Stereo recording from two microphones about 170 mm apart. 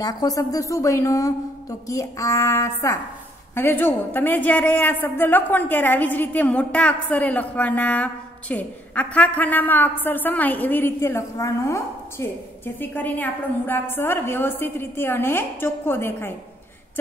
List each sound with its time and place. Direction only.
0.0 s a woman's voice: 20° left (ahead or behind)